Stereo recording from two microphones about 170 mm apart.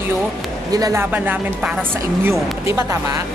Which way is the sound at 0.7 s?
20° right (ahead or behind).